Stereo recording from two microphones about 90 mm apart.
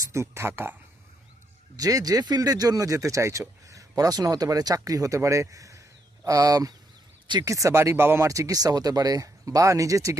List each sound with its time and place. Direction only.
0.0 s speech: 30° right (ahead or behind)
1.7 s speech: 40° right (ahead or behind); by 8.3 s 25° right (ahead or behind)
8.3 s speech: 40° right (ahead or behind)